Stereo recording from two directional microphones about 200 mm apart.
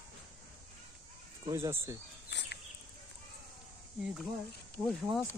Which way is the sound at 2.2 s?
60° left (ahead or behind).